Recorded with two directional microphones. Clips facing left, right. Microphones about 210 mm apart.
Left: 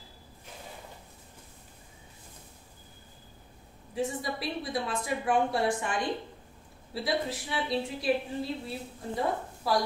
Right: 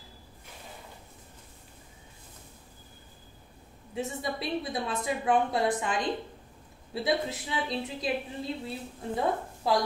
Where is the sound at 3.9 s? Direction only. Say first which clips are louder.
Left 1 dB; 25° right (ahead or behind).